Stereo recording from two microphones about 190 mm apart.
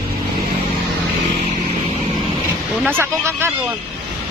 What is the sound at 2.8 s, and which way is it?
Speech, 10° right (ahead or behind).